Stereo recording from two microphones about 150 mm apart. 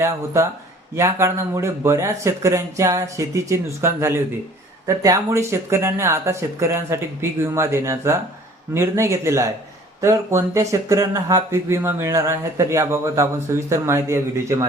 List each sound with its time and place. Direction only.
0.9 s speech: 20° right (ahead or behind)